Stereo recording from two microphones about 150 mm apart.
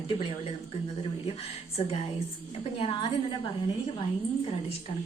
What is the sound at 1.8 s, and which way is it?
Speech, 45° left (ahead or behind).